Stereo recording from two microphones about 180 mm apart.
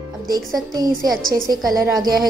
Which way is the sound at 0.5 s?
20° right (ahead or behind).